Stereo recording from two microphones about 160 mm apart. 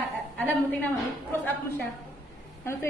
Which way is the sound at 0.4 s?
10° left (ahead or behind).